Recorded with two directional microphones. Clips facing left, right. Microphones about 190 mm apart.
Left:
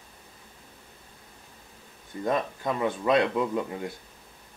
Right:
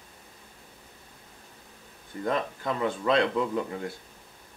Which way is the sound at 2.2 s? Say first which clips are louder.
Left 1 dB; 15° left (ahead or behind).